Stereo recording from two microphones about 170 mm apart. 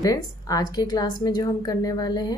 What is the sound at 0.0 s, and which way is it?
A woman's voice, 20° left (ahead or behind).